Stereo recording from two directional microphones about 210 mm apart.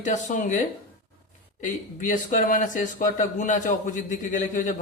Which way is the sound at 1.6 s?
40° left (ahead or behind).